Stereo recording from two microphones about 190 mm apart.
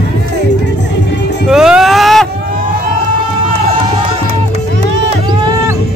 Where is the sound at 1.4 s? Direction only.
5° right (ahead or behind).